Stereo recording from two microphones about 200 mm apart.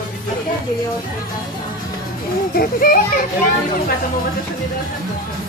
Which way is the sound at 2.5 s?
45° left (ahead or behind).